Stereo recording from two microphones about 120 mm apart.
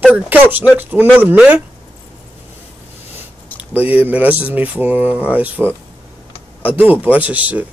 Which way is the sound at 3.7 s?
15° right (ahead or behind).